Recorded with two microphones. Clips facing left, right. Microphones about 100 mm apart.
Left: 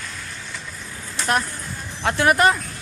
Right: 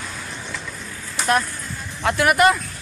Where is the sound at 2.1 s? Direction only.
30° left (ahead or behind).